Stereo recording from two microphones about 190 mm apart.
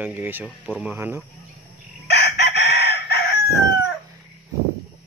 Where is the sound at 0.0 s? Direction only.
10° right (ahead or behind).